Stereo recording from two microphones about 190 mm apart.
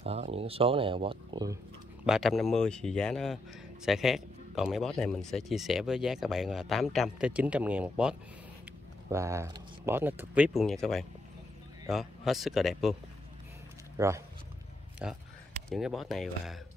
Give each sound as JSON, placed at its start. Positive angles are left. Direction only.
{"t": 0.0, "sound": "speech", "side_deg": -30}
{"t": 2.0, "sound": "a man's voice", "side_deg": 0}
{"t": 13.9, "sound": "speech", "side_deg": -15}
{"t": 15.7, "sound": "a man's voice", "side_deg": 0}